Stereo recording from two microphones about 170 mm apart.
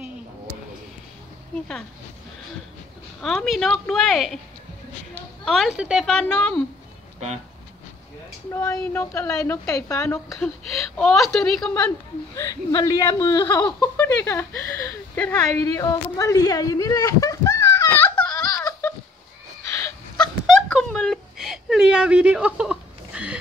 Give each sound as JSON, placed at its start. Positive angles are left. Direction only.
{"t": 3.2, "sound": "a woman's voice", "side_deg": 0}
{"t": 5.4, "sound": "a woman's voice", "side_deg": 0}
{"t": 8.5, "sound": "a woman's voice", "side_deg": 15}
{"t": 10.1, "sound": "a woman's voice", "side_deg": 0}
{"t": 12.4, "sound": "speech", "side_deg": 20}
{"t": 13.7, "sound": "speech", "side_deg": 10}
{"t": 20.2, "sound": "wail", "side_deg": 5}